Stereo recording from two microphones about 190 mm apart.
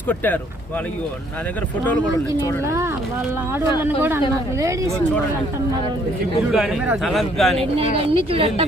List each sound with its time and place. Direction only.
3.8 s speech: 10° right (ahead or behind)
6.5 s speech: 5° right (ahead or behind)
7.9 s speech: 30° right (ahead or behind)